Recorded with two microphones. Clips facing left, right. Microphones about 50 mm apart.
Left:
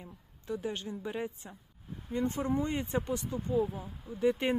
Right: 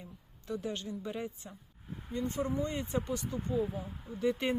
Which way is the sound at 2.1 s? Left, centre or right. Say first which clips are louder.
Left 3 dB; left.